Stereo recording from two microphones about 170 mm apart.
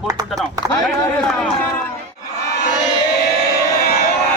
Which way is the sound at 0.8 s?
5° left (ahead or behind).